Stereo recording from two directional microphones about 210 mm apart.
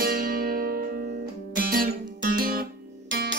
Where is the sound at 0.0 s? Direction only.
45° right (ahead or behind).